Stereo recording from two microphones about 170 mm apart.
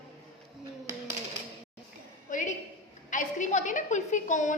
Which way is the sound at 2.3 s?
50° left (ahead or behind).